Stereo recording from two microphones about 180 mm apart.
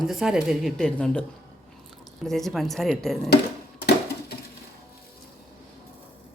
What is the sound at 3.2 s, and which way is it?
Sewing machine, 65° left (ahead or behind).